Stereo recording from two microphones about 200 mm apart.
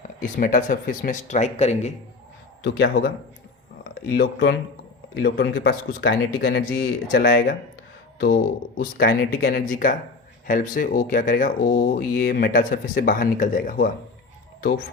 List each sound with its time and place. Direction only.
0.2 s speech: 40° left (ahead or behind)
2.6 s speech: 55° left (ahead or behind)
4.1 s speech: 55° left (ahead or behind)
8.8 s speech: 50° left (ahead or behind)